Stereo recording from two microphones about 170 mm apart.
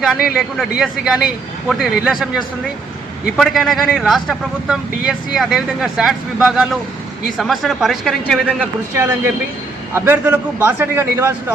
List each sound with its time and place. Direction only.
0.0 s a man's voice: 5° right (ahead or behind)
9.0 s a man's voice: 15° right (ahead or behind)